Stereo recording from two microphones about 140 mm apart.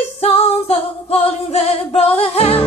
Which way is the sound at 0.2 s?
45° left (ahead or behind).